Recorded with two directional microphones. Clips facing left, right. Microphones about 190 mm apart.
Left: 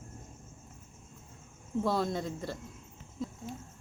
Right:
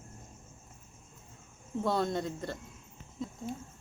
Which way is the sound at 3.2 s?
5° left (ahead or behind).